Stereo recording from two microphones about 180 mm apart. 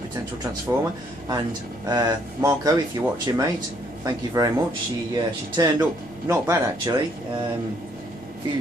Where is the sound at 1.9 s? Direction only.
20° right (ahead or behind).